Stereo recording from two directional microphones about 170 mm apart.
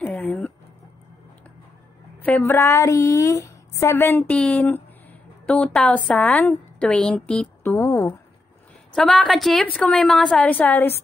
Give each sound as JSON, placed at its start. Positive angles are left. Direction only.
{"t": 0.0, "sound": "a sound", "side_deg": 10}
{"t": 2.2, "sound": "a woman's voice", "side_deg": 10}
{"t": 8.9, "sound": "a woman's voice", "side_deg": 5}